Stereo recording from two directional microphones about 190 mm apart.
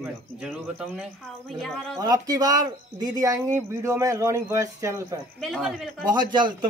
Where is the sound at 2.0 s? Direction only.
20° right (ahead or behind).